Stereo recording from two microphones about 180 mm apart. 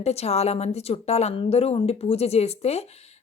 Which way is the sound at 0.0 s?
35° left (ahead or behind).